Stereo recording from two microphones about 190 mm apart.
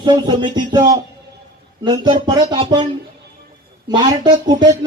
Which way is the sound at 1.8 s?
20° right (ahead or behind).